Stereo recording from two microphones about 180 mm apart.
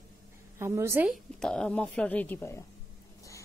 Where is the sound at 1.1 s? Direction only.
5° left (ahead or behind).